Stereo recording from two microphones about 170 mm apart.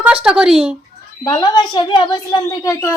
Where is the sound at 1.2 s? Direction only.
20° left (ahead or behind).